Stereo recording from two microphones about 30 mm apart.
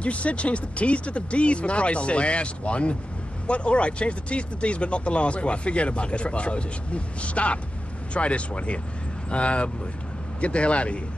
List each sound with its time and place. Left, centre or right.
0.0 s speech: left